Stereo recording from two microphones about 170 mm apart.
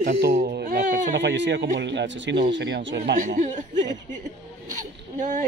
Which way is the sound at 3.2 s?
50° right (ahead or behind).